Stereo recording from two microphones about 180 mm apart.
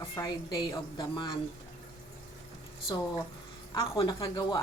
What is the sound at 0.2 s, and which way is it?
A woman's voice, 20° left (ahead or behind).